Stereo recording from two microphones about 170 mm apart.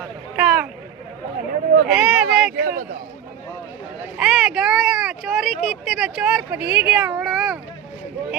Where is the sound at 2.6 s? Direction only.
60° right (ahead or behind).